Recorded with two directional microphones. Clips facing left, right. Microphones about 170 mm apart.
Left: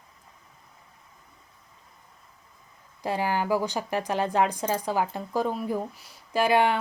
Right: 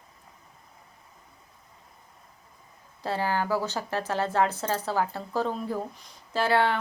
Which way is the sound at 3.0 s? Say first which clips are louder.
Left 1 dB; 15° left (ahead or behind).